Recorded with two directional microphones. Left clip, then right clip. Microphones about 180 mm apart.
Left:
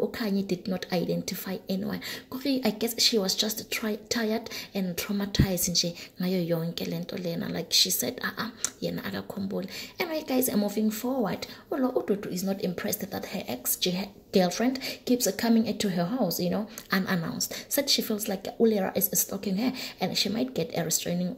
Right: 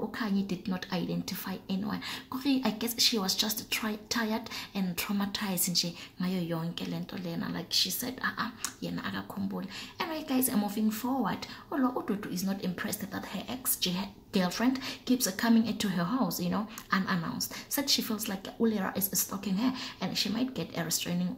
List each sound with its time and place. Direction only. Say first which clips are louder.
0.2 s speech: left 4 dB; 20° left (ahead or behind)